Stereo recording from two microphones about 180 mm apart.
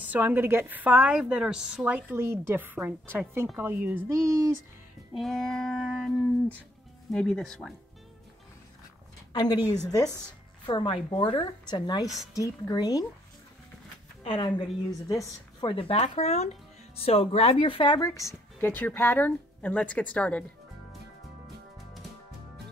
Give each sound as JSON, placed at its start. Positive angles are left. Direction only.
{"t": 0.0, "sound": "a woman's voice", "side_deg": -10}
{"t": 5.1, "sound": "a sound", "side_deg": 0}
{"t": 9.3, "sound": "a woman's voice", "side_deg": 20}
{"t": 14.2, "sound": "speech", "side_deg": 30}